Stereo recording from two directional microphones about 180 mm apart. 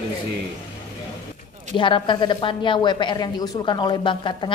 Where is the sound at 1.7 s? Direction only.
25° left (ahead or behind).